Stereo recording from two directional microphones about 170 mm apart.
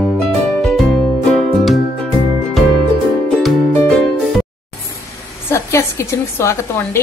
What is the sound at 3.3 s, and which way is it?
Music, 5° left (ahead or behind).